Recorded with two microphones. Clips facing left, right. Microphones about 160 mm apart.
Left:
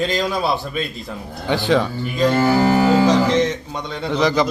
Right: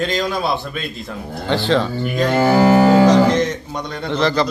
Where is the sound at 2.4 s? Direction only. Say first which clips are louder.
Right 5 dB; 65° right (ahead or behind).